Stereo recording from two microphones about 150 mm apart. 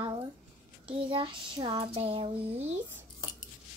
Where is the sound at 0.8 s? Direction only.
35° right (ahead or behind).